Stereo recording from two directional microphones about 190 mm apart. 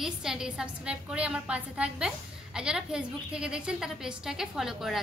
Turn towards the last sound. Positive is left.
turn(degrees=0)  # may be behind; listen again after turning